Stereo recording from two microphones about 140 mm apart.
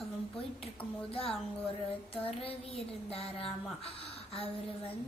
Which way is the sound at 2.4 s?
45° left (ahead or behind).